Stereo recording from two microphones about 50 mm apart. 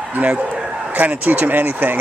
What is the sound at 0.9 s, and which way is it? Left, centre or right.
Speech, right.